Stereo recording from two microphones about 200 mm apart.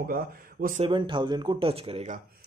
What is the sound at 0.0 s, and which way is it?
Speech, 45° right (ahead or behind).